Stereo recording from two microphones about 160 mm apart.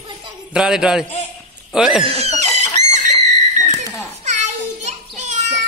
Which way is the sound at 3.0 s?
45° right (ahead or behind).